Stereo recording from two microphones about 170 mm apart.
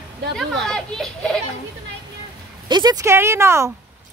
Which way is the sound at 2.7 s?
25° right (ahead or behind).